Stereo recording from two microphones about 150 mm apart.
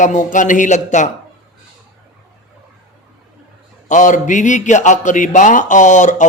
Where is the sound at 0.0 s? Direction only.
55° left (ahead or behind).